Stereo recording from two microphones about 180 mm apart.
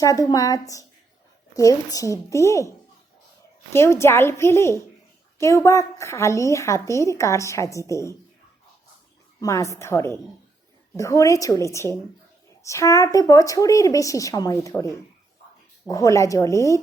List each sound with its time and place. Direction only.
0.0 s a woman's voice: 20° left (ahead or behind)
9.4 s a woman's voice: 15° left (ahead or behind)